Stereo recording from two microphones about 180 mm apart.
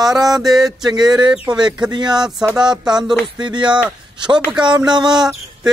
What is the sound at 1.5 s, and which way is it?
A man's voice, 25° right (ahead or behind).